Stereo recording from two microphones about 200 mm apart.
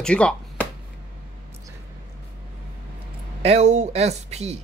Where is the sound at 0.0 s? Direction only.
5° left (ahead or behind).